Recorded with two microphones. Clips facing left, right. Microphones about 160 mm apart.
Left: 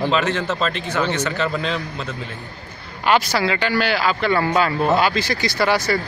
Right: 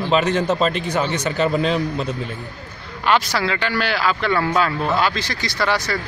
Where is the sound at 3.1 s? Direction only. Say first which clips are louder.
Left 1 dB; 5° left (ahead or behind).